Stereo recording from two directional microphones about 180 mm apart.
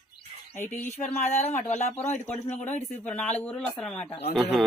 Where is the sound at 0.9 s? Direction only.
40° left (ahead or behind).